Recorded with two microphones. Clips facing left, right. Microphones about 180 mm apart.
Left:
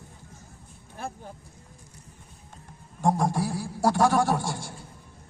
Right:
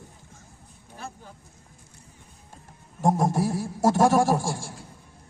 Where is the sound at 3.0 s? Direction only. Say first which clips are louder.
Right 2 dB; 25° right (ahead or behind).